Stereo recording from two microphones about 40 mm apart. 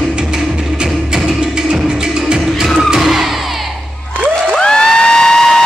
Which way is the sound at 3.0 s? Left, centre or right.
Centre.